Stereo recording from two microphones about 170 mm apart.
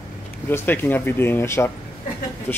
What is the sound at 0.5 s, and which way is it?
Speech, 10° left (ahead or behind).